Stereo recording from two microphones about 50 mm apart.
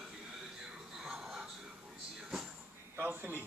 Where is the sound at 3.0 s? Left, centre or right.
Right.